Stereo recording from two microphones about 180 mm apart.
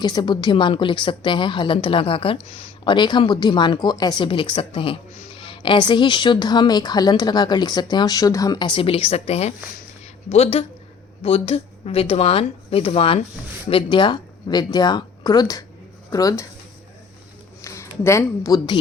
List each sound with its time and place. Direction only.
0.0 s a woman's voice: 25° left (ahead or behind)
17.6 s speech: 15° left (ahead or behind)